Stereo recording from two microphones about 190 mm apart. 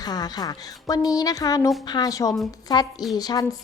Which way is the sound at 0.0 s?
20° left (ahead or behind).